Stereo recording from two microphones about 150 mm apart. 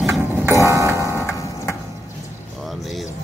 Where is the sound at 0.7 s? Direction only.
20° right (ahead or behind).